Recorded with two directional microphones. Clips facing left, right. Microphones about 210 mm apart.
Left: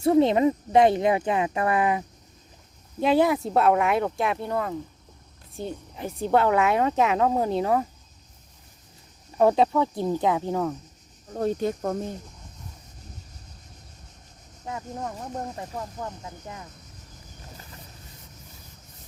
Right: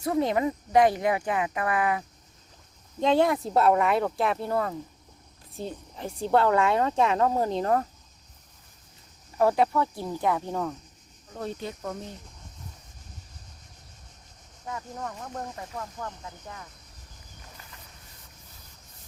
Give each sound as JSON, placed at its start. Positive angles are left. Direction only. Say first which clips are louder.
{"t": 0.0, "sound": "speech", "louder": "left 6 dB", "side_deg": 25}
{"t": 3.0, "sound": "a woman's voice", "louder": "left 2 dB", "side_deg": 5}
{"t": 9.4, "sound": "speech", "louder": "left 3 dB", "side_deg": 20}
{"t": 11.3, "sound": "speech", "louder": "left 9 dB", "side_deg": 45}
{"t": 14.6, "sound": "speech", "louder": "left 3 dB", "side_deg": 20}